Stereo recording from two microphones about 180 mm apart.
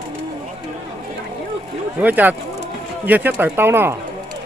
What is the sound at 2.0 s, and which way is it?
Speech, 10° right (ahead or behind).